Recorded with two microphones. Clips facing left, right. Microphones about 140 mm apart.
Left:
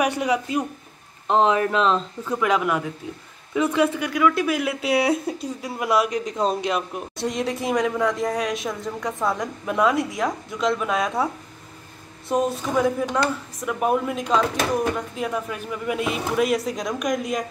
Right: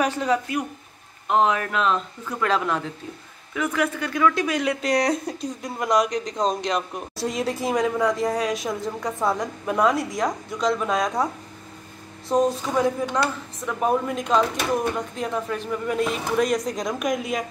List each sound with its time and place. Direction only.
0.0 s speech: 10° left (ahead or behind)
1.2 s speech: 25° left (ahead or behind)
2.4 s speech: 10° left (ahead or behind)
3.5 s speech: 25° left (ahead or behind)
4.0 s speech: 5° left (ahead or behind)
12.3 s speech: centre (ahead or behind)